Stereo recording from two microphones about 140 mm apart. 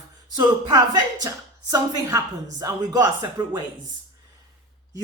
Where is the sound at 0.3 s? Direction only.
30° right (ahead or behind).